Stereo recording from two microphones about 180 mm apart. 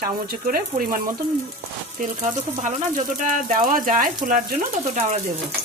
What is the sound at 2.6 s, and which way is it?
Speech, 45° right (ahead or behind).